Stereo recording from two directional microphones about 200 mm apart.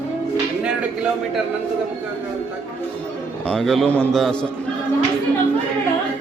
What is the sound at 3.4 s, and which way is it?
A man's voice, centre (ahead or behind).